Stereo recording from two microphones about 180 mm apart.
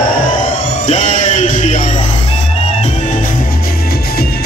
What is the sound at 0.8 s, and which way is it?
Music, 40° left (ahead or behind).